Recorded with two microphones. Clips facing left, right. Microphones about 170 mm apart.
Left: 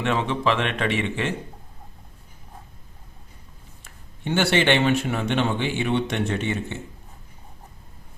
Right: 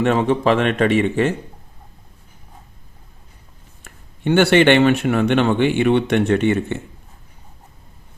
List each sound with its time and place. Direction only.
0.0 s speech: 45° right (ahead or behind)
3.8 s speech: 60° right (ahead or behind)